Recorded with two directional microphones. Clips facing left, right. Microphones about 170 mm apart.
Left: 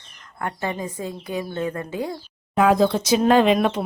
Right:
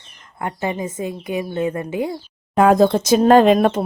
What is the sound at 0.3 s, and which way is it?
Speech, 15° right (ahead or behind).